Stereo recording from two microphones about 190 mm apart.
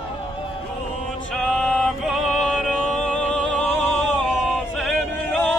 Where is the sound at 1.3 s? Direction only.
Centre (ahead or behind).